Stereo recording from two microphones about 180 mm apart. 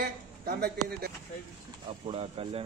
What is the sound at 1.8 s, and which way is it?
Speech, 30° right (ahead or behind).